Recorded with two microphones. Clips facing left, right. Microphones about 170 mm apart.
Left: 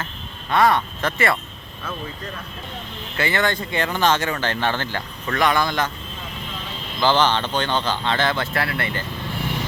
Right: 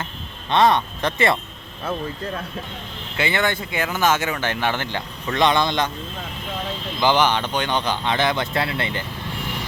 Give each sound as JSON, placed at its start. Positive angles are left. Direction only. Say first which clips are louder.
{"t": 0.5, "sound": "speech", "louder": "right 1 dB", "side_deg": -20}
{"t": 3.2, "sound": "speech", "louder": "even", "side_deg": -15}
{"t": 7.0, "sound": "speech", "louder": "even", "side_deg": -15}